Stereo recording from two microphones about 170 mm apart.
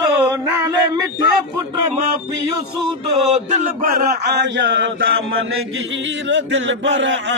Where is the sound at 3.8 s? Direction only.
60° right (ahead or behind); by 5.1 s 90° right.